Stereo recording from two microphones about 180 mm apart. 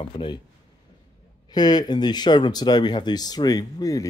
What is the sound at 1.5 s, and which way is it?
Speech, 20° left (ahead or behind).